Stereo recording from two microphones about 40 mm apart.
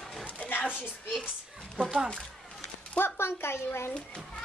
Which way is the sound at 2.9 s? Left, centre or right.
Left.